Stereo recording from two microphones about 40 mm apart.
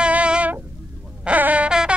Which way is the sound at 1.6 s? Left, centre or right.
Right.